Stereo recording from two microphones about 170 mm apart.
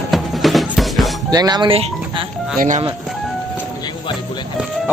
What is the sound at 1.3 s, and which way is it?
Speech, 25° right (ahead or behind).